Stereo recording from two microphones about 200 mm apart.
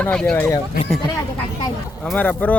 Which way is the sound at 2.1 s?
10° left (ahead or behind).